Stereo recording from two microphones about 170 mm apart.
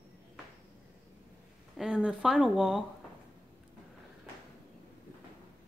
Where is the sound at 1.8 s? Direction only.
5° right (ahead or behind).